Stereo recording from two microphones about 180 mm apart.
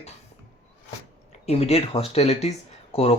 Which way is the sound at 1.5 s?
35° left (ahead or behind).